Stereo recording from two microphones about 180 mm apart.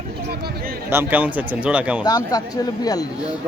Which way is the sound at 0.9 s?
10° right (ahead or behind).